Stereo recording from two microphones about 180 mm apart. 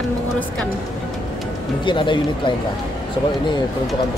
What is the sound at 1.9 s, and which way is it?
Speech, 25° left (ahead or behind).